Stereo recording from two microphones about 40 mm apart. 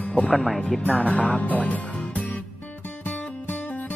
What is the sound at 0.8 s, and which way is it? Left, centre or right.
Music, left.